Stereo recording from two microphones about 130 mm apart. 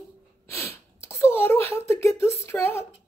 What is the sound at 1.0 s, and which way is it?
A woman's voice, 20° left (ahead or behind).